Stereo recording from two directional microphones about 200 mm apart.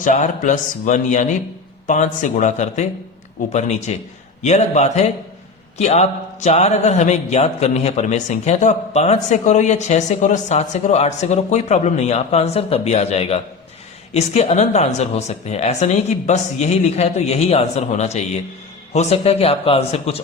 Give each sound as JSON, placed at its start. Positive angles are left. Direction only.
{"t": 0.0, "sound": "speech", "side_deg": 40}